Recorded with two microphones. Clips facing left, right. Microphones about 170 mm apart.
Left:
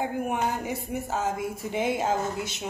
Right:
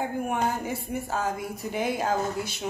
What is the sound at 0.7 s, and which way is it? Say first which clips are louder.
Speech: even; 20° left (ahead or behind).